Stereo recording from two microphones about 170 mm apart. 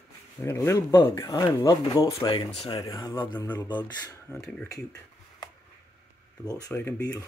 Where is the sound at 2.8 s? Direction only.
25° left (ahead or behind).